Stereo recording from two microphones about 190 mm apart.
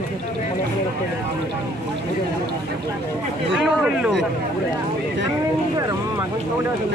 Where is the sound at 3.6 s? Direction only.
5° right (ahead or behind).